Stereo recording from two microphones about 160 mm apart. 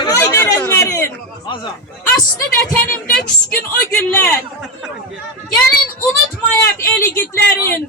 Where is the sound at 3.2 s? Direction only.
10° left (ahead or behind).